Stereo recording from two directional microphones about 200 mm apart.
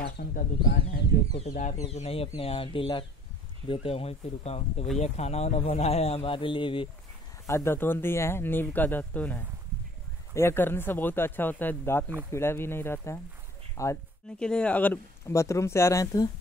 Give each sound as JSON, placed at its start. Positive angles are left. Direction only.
{"t": 0.0, "sound": "bird", "side_deg": 50}
{"t": 1.4, "sound": "speech", "side_deg": 35}
{"t": 7.4, "sound": "speech", "side_deg": 15}
{"t": 14.4, "sound": "speech", "side_deg": 5}